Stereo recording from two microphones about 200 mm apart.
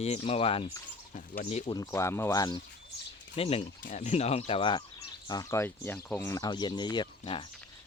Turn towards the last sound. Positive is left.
turn(degrees=25)  # may be behind; listen again after turning